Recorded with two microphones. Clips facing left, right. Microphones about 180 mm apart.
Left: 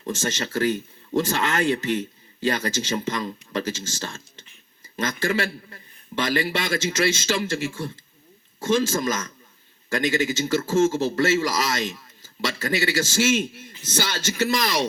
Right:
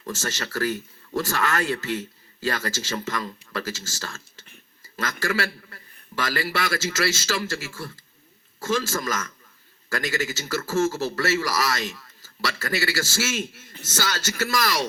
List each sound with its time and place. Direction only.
0.0 s speech: 20° left (ahead or behind)